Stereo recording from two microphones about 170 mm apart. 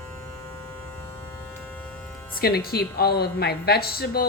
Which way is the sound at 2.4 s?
65° left (ahead or behind).